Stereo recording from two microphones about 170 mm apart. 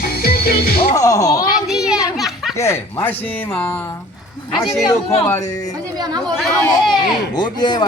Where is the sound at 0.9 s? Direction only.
20° left (ahead or behind).